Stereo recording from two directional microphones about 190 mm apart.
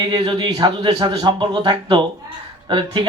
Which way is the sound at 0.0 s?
20° right (ahead or behind).